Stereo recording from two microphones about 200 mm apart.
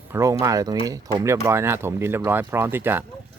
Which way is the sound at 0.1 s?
15° right (ahead or behind).